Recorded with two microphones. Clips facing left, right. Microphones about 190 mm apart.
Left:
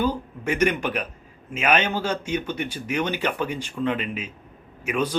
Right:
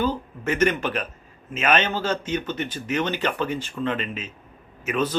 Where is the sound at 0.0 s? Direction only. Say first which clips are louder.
Even; 10° left (ahead or behind).